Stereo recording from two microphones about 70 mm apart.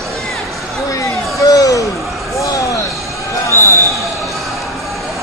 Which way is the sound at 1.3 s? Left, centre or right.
Left.